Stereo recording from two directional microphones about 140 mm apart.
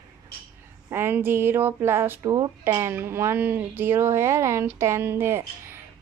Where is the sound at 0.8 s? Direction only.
15° right (ahead or behind).